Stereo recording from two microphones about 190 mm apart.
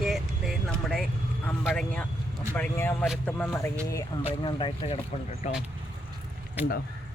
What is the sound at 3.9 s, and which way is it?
Speech, 20° left (ahead or behind).